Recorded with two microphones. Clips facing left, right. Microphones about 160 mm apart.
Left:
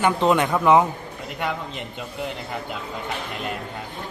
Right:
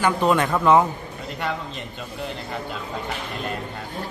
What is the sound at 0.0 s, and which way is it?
Speech, 20° left (ahead or behind).